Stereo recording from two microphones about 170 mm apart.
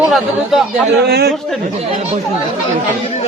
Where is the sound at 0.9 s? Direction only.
70° right (ahead or behind).